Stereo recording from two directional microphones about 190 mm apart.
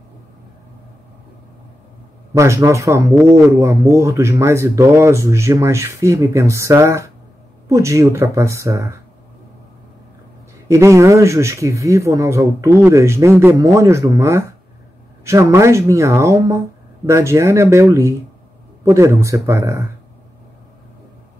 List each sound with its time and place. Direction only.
2.3 s speech: 15° right (ahead or behind)
10.7 s speech: 15° right (ahead or behind)